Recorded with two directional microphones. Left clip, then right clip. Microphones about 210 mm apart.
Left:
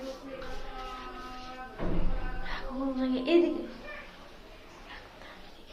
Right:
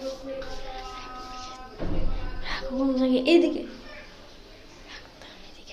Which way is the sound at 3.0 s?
45° right (ahead or behind).